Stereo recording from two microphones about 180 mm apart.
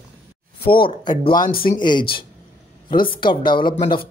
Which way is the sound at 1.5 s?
55° left (ahead or behind).